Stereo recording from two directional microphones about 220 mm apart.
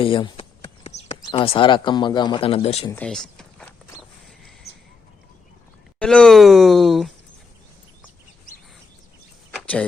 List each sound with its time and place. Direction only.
0.0 s speech: 25° left (ahead or behind)
2.9 s a sound: 5° left (ahead or behind)
6.0 s speech: 5° left (ahead or behind)